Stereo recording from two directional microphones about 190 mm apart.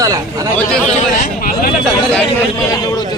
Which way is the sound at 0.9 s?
40° left (ahead or behind).